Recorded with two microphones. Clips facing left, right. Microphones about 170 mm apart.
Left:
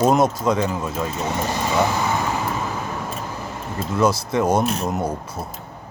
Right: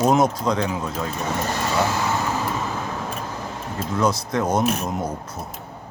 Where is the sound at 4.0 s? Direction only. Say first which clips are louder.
Left 3 dB; 5° left (ahead or behind).